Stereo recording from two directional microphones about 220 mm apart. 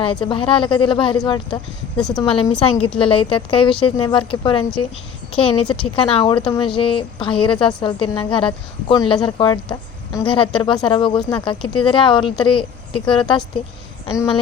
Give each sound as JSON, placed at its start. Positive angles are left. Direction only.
{"t": 0.0, "sound": "speech", "side_deg": 25}
{"t": 2.0, "sound": "speech", "side_deg": 5}
{"t": 2.2, "sound": "speech", "side_deg": 25}